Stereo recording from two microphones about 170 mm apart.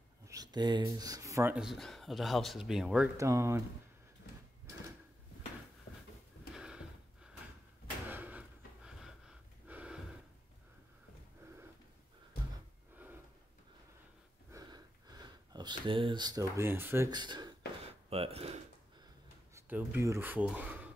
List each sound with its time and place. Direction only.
0.3 s speech: 25° right (ahead or behind)
1.5 s speech: centre (ahead or behind)
3.2 s speech: 20° right (ahead or behind)
6.5 s a sound: 5° right (ahead or behind)
8.1 s gasp: 10° right (ahead or behind)
14.5 s sniff: 25° right (ahead or behind)
17.1 s speech: 25° right (ahead or behind)
19.5 s speech: 15° right (ahead or behind)